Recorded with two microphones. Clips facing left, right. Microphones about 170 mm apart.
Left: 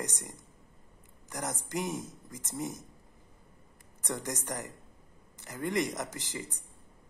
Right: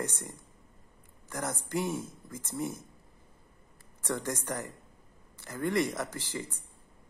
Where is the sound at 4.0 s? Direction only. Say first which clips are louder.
Right 3 dB; 20° left (ahead or behind).